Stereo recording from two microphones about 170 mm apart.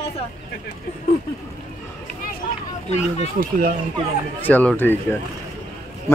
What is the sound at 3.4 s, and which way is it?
Speech, 55° right (ahead or behind).